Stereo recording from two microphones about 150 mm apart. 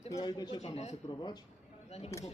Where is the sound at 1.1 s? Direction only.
25° left (ahead or behind).